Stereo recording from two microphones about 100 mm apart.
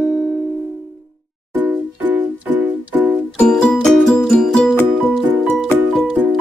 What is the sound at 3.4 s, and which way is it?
Music, 5° left (ahead or behind).